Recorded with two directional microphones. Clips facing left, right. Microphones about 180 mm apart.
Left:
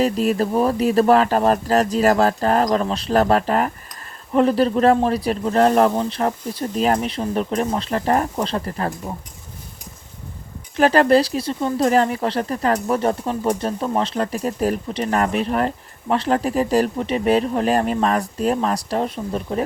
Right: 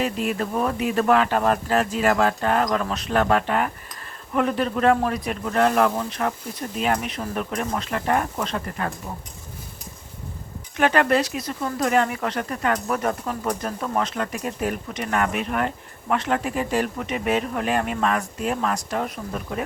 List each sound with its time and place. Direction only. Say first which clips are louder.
0.0 s speech: left 6 dB; 35° left (ahead or behind)
10.8 s speech: left 5 dB; 35° left (ahead or behind)